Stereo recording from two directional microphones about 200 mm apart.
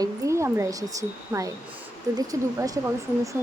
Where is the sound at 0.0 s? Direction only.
15° right (ahead or behind).